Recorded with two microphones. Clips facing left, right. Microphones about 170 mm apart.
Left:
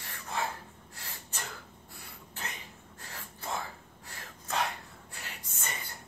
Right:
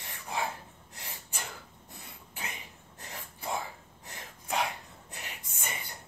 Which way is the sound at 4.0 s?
20° right (ahead or behind).